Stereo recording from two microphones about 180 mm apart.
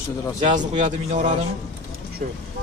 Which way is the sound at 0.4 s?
45° right (ahead or behind).